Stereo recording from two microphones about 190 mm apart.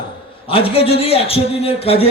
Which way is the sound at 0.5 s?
30° left (ahead or behind).